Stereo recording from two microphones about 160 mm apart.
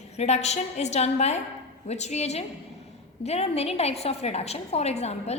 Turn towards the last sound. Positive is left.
turn(degrees=40)  # may be behind; listen again after turning